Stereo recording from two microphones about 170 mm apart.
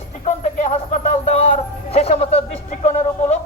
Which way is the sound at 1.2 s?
35° left (ahead or behind).